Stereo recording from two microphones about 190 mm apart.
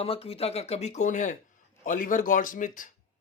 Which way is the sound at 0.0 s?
30° left (ahead or behind).